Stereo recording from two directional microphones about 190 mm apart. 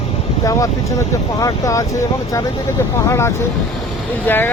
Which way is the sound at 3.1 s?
15° left (ahead or behind).